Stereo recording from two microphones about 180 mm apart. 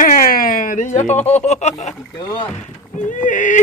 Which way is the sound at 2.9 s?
45° left (ahead or behind).